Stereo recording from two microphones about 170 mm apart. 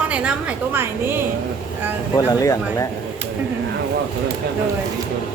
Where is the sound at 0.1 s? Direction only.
5° right (ahead or behind).